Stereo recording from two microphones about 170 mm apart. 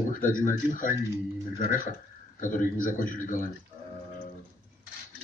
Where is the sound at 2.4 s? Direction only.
50° left (ahead or behind).